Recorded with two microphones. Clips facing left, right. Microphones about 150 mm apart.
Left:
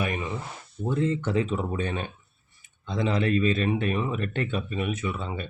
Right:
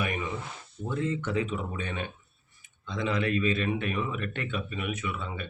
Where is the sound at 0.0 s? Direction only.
30° left (ahead or behind).